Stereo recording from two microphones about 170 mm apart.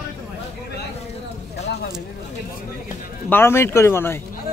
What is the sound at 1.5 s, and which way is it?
Speech, 80° left.